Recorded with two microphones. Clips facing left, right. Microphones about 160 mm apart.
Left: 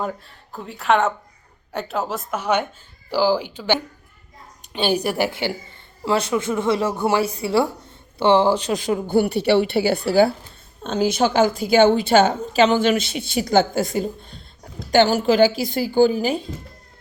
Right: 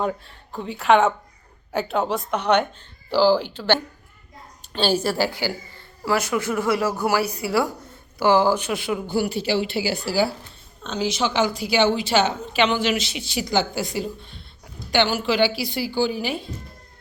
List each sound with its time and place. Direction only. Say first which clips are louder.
0.0 s a woman's voice: right 2 dB; centre (ahead or behind); by 9.0 s 40° left (ahead or behind)
9.0 s a woman's voice: left 7 dB; 55° left (ahead or behind)